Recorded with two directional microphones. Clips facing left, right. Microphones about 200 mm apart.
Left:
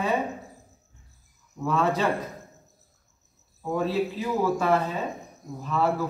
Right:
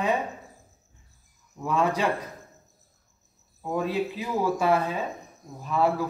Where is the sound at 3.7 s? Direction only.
15° right (ahead or behind).